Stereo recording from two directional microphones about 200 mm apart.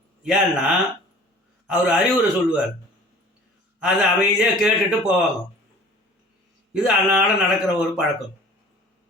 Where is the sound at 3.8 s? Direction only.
5° right (ahead or behind).